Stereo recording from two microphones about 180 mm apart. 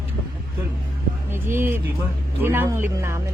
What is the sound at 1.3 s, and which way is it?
Speech, 15° right (ahead or behind).